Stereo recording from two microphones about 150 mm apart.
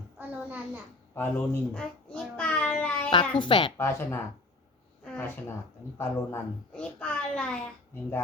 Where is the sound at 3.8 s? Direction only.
15° left (ahead or behind).